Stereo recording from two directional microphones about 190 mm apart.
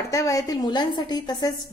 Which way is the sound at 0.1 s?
15° left (ahead or behind).